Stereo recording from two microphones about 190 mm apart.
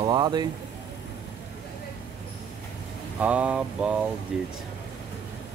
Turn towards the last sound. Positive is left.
turn(degrees=-5)  # may be behind; listen again after turning